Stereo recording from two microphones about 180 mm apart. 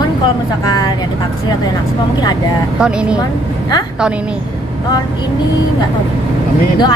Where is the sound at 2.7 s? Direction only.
5° right (ahead or behind).